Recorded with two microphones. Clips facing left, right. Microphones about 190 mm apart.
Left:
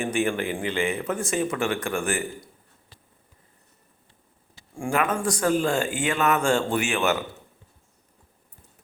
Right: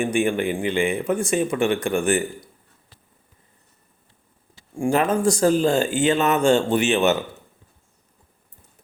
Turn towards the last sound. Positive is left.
turn(degrees=-20)  # may be behind; listen again after turning